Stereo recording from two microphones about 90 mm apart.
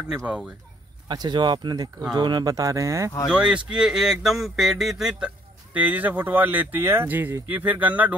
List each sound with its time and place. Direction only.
1.0 s speech: 55° right (ahead or behind); by 3.1 s 35° right (ahead or behind)
3.3 s speech: 10° right (ahead or behind)